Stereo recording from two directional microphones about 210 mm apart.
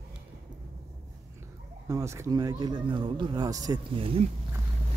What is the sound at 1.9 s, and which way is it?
Speech, 15° right (ahead or behind).